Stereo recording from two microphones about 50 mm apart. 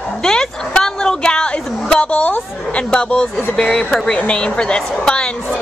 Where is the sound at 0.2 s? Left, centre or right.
Centre.